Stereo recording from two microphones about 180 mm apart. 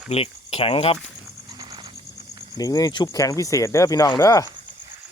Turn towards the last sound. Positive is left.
turn(degrees=15)  # may be behind; listen again after turning